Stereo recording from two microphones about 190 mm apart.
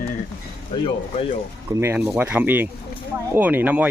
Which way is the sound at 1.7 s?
15° right (ahead or behind).